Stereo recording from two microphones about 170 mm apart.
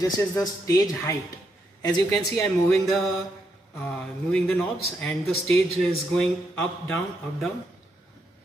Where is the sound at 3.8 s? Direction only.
5° left (ahead or behind).